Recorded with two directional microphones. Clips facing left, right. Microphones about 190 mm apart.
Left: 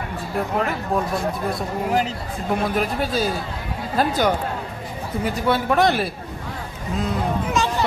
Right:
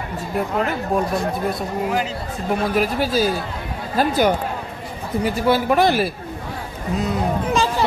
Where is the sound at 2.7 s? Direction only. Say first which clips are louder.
Right 3 dB; 5° right (ahead or behind).